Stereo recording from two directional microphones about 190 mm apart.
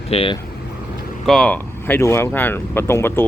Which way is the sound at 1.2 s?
5° left (ahead or behind).